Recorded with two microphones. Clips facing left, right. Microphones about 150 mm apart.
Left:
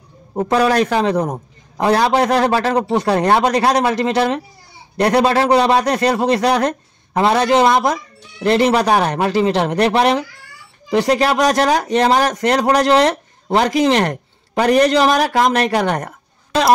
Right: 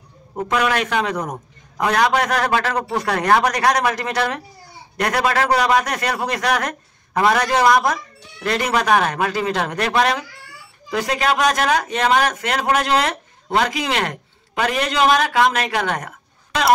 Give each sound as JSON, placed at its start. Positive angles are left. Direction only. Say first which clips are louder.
{"t": 0.4, "sound": "a man's voice", "louder": "left 5 dB", "side_deg": 35}